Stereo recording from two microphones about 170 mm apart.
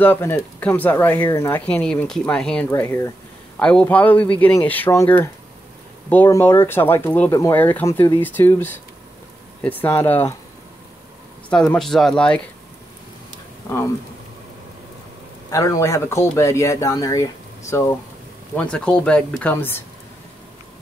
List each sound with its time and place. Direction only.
0.0 s speech: 10° left (ahead or behind)
11.5 s speech: 5° left (ahead or behind)
15.5 s speech: 20° left (ahead or behind)